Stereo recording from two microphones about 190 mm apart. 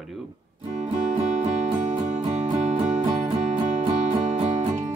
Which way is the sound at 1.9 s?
25° right (ahead or behind).